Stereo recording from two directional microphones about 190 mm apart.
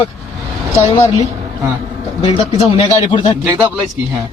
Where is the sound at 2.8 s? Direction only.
25° left (ahead or behind).